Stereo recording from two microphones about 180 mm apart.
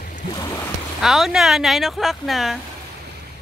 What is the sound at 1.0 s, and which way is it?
Speech, centre (ahead or behind).